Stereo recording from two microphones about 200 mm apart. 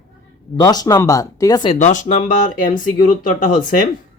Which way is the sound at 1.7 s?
40° left (ahead or behind).